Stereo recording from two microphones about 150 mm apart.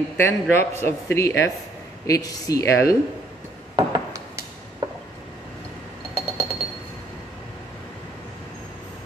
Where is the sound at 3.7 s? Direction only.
30° right (ahead or behind).